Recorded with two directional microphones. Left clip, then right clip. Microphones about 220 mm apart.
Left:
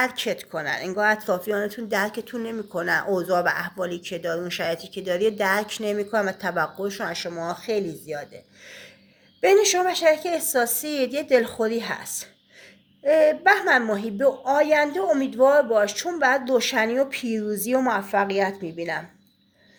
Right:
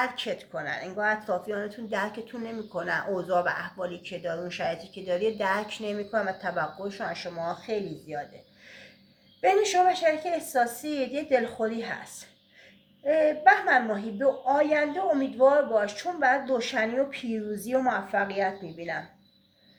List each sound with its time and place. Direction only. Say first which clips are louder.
0.0 s speech: left 5 dB; 45° left (ahead or behind)
9.4 s speech: left 3 dB; 50° left (ahead or behind)